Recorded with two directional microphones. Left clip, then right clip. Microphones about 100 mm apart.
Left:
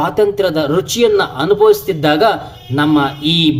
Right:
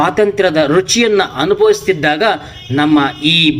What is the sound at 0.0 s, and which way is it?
A man's voice, 5° left (ahead or behind).